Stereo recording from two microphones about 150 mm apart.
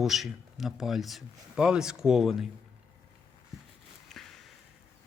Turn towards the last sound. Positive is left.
turn(degrees=0)  # may be behind; listen again after turning